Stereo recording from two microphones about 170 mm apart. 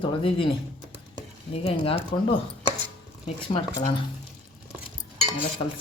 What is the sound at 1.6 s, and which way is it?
Speech, 35° left (ahead or behind).